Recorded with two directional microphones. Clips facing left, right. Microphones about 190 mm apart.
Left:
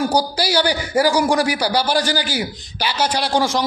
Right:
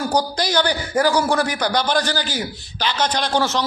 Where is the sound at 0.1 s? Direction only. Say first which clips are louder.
Left 1 dB; 10° left (ahead or behind).